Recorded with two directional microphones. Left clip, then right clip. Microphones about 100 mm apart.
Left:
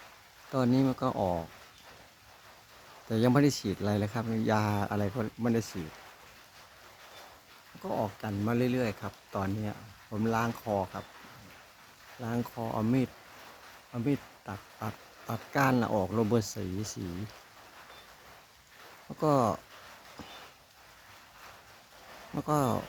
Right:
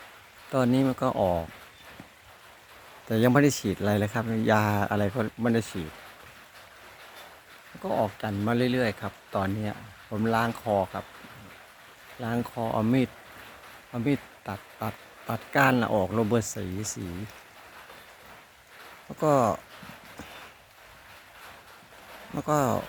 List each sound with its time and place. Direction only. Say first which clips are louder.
0.5 s speech: right 4 dB; 5° right (ahead or behind)
3.1 s speech: right 4 dB; 10° right (ahead or behind); by 5.7 s 30° right (ahead or behind)
7.8 s speech: right 6 dB; 30° right (ahead or behind)
12.2 s speech: right 5 dB; 30° right (ahead or behind)
12.5 s speech: right 6 dB; 40° right (ahead or behind)
15.3 s speech: right 5 dB; 15° right (ahead or behind)
16.4 s speech: right 3 dB; 35° left (ahead or behind)
19.0 s speech: right 4 dB; centre (ahead or behind)
22.4 s speech: right 4 dB; centre (ahead or behind)